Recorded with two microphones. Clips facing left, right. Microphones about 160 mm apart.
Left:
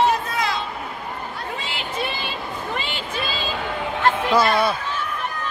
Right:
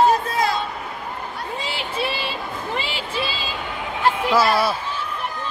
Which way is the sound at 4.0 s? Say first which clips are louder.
Even; 5° right (ahead or behind).